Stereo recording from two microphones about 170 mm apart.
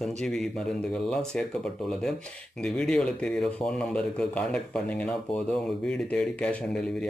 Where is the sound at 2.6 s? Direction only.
5° left (ahead or behind).